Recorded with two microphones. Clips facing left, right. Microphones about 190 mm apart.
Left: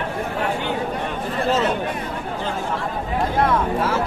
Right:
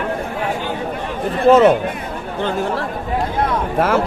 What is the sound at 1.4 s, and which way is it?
Speech, 55° right (ahead or behind).